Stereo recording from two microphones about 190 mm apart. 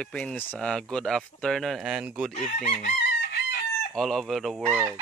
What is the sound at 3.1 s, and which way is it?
Chicken, 60° left (ahead or behind).